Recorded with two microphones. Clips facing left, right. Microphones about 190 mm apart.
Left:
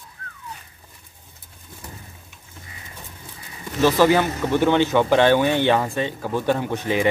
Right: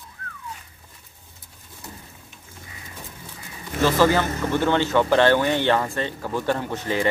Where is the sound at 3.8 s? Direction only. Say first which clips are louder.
Left 2 dB; 15° left (ahead or behind).